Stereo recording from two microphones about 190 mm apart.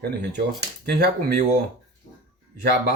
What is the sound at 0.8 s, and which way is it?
Speech, 55° right (ahead or behind).